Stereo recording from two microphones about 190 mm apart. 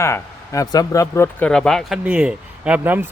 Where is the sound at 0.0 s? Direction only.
15° left (ahead or behind).